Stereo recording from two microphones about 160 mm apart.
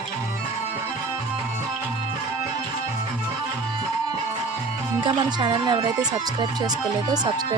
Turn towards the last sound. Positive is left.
turn(degrees=-30)  # may be behind; listen again after turning